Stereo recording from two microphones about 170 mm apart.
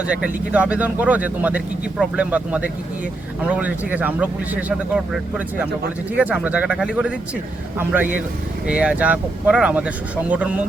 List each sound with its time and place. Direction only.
0.0 s speech: 5° right (ahead or behind)
6.1 s speech: 10° right (ahead or behind)